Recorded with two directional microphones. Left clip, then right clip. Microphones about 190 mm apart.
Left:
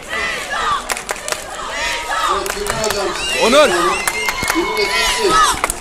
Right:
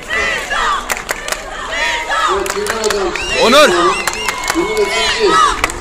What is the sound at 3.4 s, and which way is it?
Speech, centre (ahead or behind).